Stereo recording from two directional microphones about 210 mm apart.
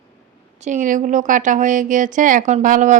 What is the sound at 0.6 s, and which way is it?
Speech, 35° right (ahead or behind).